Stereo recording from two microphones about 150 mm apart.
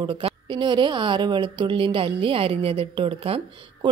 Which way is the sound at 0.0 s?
35° right (ahead or behind).